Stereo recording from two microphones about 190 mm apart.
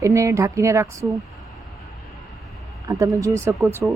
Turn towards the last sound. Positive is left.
turn(degrees=-5)  # may be behind; listen again after turning